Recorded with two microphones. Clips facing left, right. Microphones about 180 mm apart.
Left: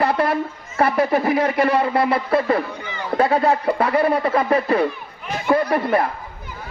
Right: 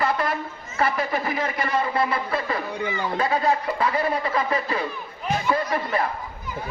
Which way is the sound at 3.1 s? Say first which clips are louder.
Left 6 dB; 60° left (ahead or behind).